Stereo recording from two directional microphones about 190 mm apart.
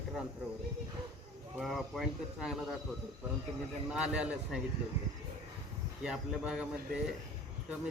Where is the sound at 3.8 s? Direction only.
5° right (ahead or behind).